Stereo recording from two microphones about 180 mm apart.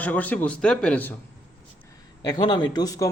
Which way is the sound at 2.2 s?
25° left (ahead or behind).